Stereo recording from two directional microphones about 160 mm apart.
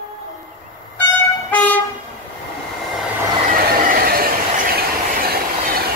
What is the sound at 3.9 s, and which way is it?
Train, 65° right (ahead or behind).